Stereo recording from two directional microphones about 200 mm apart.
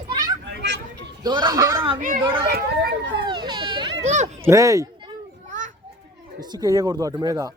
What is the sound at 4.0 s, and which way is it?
Speech, 35° right (ahead or behind).